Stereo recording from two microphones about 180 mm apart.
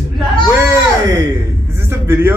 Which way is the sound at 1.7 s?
15° right (ahead or behind).